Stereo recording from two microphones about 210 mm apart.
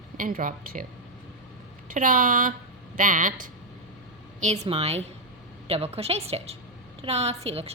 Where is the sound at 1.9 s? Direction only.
40° right (ahead or behind).